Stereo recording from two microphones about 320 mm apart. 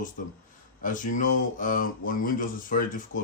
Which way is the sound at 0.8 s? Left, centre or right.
Left.